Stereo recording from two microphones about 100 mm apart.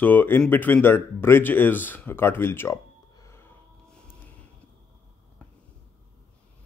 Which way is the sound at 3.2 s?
25° left (ahead or behind).